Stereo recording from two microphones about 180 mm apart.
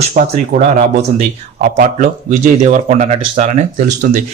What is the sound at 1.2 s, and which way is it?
A man's voice, 45° right (ahead or behind).